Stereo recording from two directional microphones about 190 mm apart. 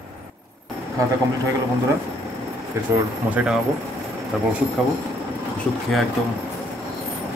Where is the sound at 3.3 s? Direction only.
5° right (ahead or behind).